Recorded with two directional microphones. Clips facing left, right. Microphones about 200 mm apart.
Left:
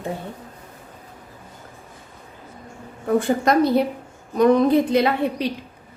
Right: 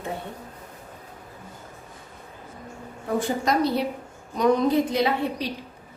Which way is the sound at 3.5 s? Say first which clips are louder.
Left 6 dB; 50° left (ahead or behind).